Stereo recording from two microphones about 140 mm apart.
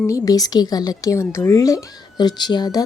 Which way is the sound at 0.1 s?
25° left (ahead or behind).